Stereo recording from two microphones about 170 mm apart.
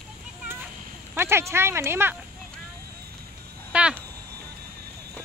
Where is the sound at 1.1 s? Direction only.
15° right (ahead or behind).